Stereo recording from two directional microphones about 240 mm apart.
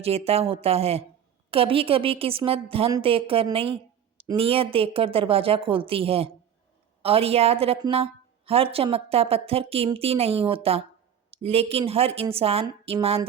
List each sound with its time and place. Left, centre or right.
0.0 s a woman's voice: right